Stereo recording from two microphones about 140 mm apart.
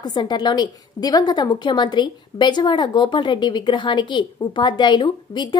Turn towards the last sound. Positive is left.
turn(degrees=35)  # may be behind; listen again after turning